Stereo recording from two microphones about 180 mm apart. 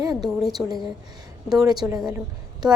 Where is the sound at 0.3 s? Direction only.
Centre (ahead or behind).